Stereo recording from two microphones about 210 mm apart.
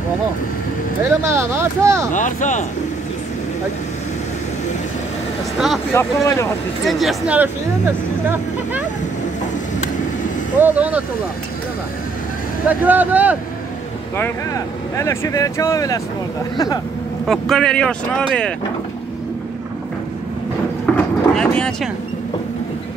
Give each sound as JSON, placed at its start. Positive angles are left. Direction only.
{"t": 1.0, "sound": "speech", "side_deg": -15}
{"t": 2.1, "sound": "speech", "side_deg": 35}
{"t": 5.9, "sound": "speech", "side_deg": 15}
{"t": 6.9, "sound": "speech", "side_deg": 0}
{"t": 10.6, "sound": "speech", "side_deg": -5}
{"t": 12.6, "sound": "speech", "side_deg": -10}
{"t": 15.0, "sound": "speech", "side_deg": 15}
{"t": 17.3, "sound": "speech", "side_deg": 5}
{"t": 20.8, "sound": "vehicle", "side_deg": 5}